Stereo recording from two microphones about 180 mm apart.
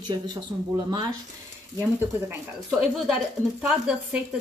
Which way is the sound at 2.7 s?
Centre (ahead or behind).